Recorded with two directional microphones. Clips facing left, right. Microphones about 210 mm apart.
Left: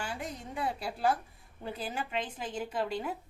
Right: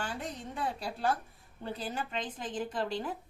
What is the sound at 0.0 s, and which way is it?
A woman's voice, 10° left (ahead or behind).